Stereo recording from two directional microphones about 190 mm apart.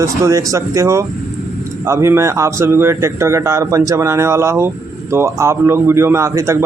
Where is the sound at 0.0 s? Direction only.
15° right (ahead or behind).